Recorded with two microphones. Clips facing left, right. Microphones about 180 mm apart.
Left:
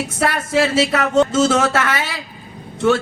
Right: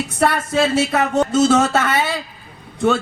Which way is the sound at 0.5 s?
75° left (ahead or behind).